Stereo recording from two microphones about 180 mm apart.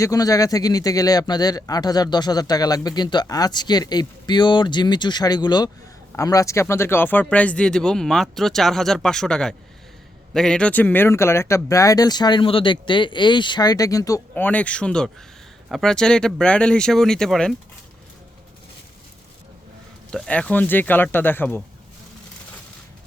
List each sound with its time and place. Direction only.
0.0 s speech: 20° left (ahead or behind); by 17.5 s centre (ahead or behind)
20.1 s speech: 5° left (ahead or behind)